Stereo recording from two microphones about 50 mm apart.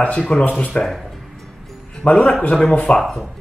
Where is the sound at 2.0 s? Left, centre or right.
Left.